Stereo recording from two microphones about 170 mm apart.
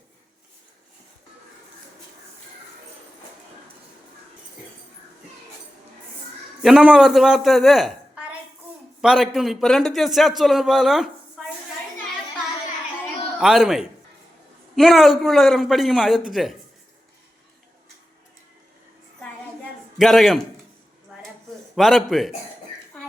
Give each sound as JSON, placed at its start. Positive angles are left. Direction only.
{"t": 6.6, "sound": "a man's voice", "side_deg": -5}
{"t": 13.4, "sound": "a man's voice", "side_deg": -5}
{"t": 20.0, "sound": "a man's voice", "side_deg": 0}
{"t": 21.8, "sound": "a man's voice", "side_deg": 0}